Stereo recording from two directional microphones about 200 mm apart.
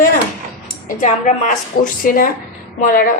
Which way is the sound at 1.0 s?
40° left (ahead or behind).